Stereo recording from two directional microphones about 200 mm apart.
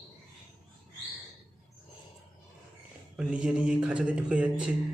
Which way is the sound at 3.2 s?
5° right (ahead or behind).